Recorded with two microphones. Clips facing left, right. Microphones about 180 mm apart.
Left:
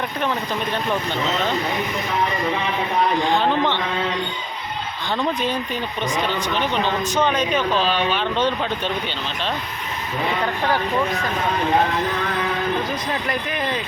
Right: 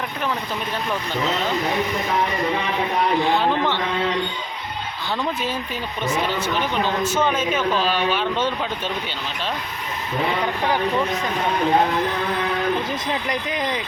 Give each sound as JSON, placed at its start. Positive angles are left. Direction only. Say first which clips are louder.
{"t": 6.1, "sound": "speech", "louder": "right 2 dB", "side_deg": -5}
{"t": 10.4, "sound": "speech", "louder": "even", "side_deg": -15}
{"t": 13.2, "sound": "speech", "louder": "even", "side_deg": -15}